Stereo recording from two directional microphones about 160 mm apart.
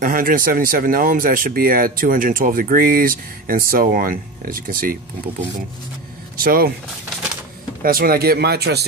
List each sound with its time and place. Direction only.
0.0 s speech: 60° right (ahead or behind)
6.3 s speech: 65° right (ahead or behind)
7.8 s speech: 65° right (ahead or behind); by 8.8 s 85° right